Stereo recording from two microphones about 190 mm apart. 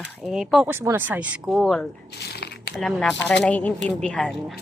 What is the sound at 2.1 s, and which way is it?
Crumpling, 60° left (ahead or behind).